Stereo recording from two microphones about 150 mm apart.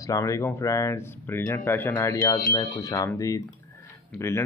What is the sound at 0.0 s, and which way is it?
Speech, 20° left (ahead or behind).